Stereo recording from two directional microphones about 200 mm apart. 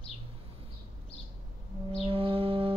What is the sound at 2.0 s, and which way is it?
Music, 25° right (ahead or behind).